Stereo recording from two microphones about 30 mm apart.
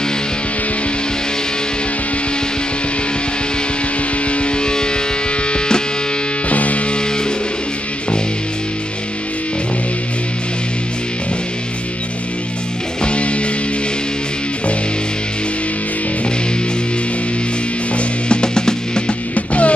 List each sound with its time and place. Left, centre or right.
4.3 s music: left
6.5 s music: left
13.0 s music: left
17.9 s music: left
19.3 s music: left